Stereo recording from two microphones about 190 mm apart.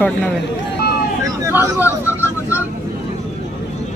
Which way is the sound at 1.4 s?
10° right (ahead or behind).